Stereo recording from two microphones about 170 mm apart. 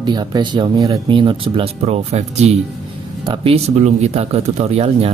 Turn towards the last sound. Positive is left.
turn(degrees=-35)  # may be behind; listen again after turning